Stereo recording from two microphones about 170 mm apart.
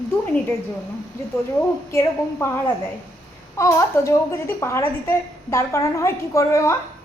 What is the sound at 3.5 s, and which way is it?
A woman's voice, 20° left (ahead or behind).